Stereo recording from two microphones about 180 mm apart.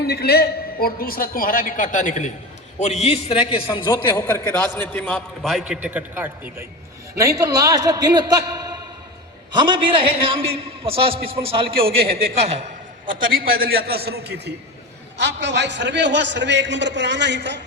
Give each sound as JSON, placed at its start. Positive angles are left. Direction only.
{"t": 0.0, "sound": "a man's voice", "side_deg": 60}
{"t": 9.5, "sound": "a man's voice", "side_deg": -25}